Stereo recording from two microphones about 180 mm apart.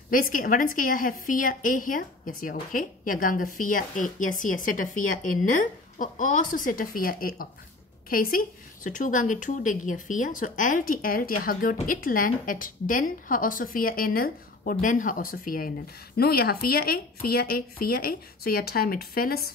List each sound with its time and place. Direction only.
0.1 s a woman's voice: 50° left (ahead or behind)